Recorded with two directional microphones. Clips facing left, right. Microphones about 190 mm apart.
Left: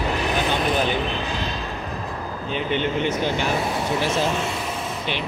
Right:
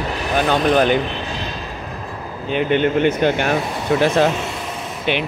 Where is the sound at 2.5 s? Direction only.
65° right (ahead or behind).